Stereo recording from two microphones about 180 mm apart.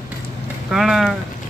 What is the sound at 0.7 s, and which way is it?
Speech, centre (ahead or behind).